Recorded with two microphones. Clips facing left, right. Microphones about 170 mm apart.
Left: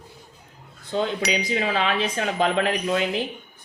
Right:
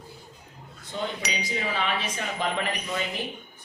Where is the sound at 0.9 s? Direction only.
80° left.